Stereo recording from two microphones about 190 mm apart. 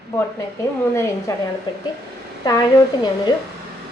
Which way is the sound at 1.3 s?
15° left (ahead or behind).